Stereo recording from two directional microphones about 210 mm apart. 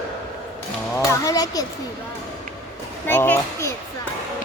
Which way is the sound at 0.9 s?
15° left (ahead or behind).